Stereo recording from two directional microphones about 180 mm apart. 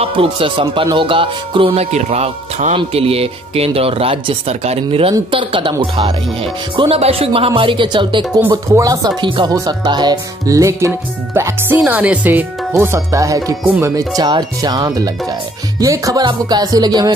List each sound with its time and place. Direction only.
0.0 s speech: 30° right (ahead or behind)
8.2 s speech: 5° right (ahead or behind)
8.6 s speech: 15° right (ahead or behind)